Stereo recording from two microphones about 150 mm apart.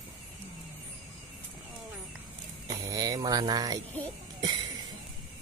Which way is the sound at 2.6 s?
25° right (ahead or behind).